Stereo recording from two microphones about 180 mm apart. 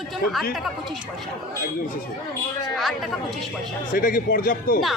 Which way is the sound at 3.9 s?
50° left (ahead or behind).